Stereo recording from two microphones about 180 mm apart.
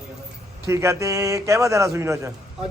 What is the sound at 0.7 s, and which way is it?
Speech, 15° right (ahead or behind).